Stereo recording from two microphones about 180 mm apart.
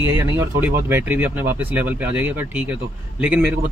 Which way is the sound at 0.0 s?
15° right (ahead or behind).